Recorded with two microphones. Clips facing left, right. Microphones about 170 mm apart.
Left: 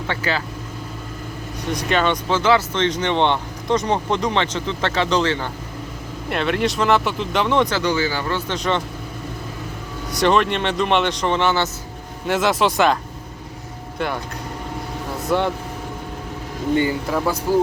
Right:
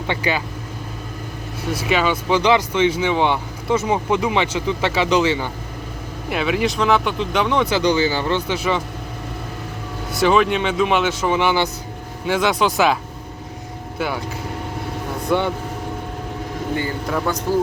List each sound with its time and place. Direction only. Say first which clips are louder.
0.1 s speech: right 2 dB; 15° right (ahead or behind)
1.7 s a man's voice: even; 5° right (ahead or behind)
7.7 s speech: right 3 dB; 20° right (ahead or behind)
8.4 s speech: right 1 dB; 5° right (ahead or behind)
10.1 s a man's voice: right 1 dB; centre (ahead or behind)
12.2 s a man's voice: even; centre (ahead or behind)
14.0 s a man's voice: even; 5° right (ahead or behind)
15.3 s a man's voice: even; centre (ahead or behind)
17.1 s a man's voice: left 1 dB; 5° left (ahead or behind)